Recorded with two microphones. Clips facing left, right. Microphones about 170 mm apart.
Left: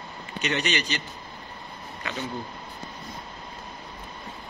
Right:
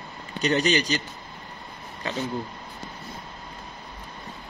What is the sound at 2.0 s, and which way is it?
Speech, 35° right (ahead or behind).